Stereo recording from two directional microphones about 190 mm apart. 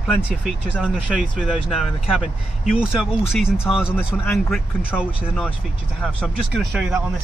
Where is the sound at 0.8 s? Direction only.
5° right (ahead or behind).